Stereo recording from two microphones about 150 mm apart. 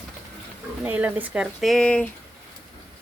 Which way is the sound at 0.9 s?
10° right (ahead or behind).